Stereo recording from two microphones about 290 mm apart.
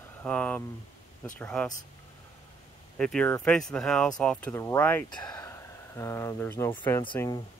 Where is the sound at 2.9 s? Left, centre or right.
Centre.